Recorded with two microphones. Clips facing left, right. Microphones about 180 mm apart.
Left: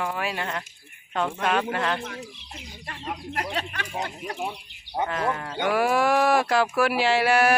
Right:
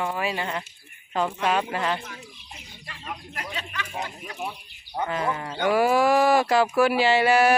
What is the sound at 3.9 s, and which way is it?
Speech, 25° left (ahead or behind).